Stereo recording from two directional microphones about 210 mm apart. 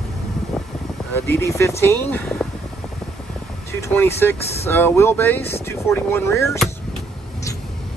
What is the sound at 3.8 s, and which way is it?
Speech, 10° left (ahead or behind).